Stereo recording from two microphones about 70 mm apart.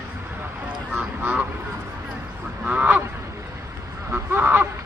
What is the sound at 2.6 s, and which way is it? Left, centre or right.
Honk, right.